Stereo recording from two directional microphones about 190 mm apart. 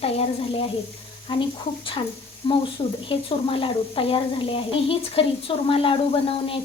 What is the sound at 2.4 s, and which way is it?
Speech, 25° left (ahead or behind).